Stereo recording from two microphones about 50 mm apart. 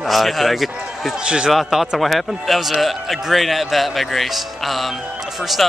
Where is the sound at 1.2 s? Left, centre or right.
Centre.